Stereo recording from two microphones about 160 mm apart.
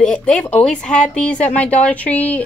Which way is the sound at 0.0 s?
5° left (ahead or behind).